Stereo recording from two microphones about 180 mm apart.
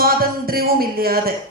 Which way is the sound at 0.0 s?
55° right (ahead or behind).